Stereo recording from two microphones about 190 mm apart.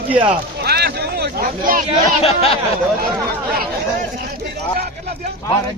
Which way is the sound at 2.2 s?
30° left (ahead or behind).